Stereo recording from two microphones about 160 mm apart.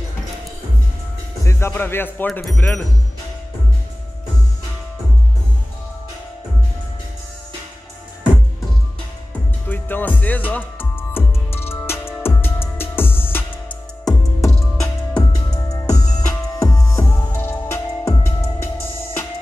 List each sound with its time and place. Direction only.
1.4 s speech: 15° left (ahead or behind)
9.7 s music: 10° left (ahead or behind)